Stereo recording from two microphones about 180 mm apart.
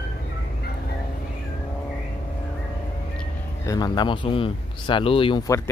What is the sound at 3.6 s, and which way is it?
Speech, 20° left (ahead or behind).